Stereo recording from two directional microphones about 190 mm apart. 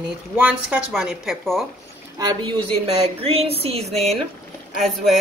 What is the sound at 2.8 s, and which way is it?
Speech, 30° right (ahead or behind).